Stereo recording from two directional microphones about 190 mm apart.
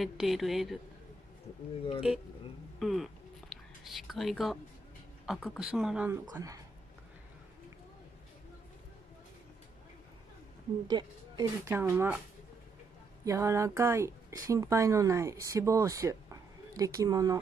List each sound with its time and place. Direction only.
0.0 s speech: centre (ahead or behind)
2.8 s a sound: centre (ahead or behind)
5.2 s speech: centre (ahead or behind)
6.3 s speech: 15° right (ahead or behind)
10.9 s speech: 20° right (ahead or behind)
13.2 s speech: 15° right (ahead or behind)